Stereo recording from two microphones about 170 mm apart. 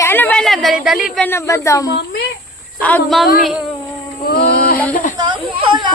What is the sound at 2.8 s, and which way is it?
Speech, 5° left (ahead or behind).